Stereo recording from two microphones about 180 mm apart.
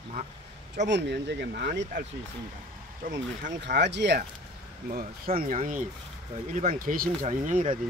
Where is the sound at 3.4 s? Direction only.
65° right (ahead or behind).